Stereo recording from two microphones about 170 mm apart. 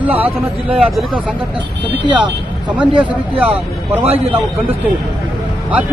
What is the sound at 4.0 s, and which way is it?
Speech, 35° right (ahead or behind).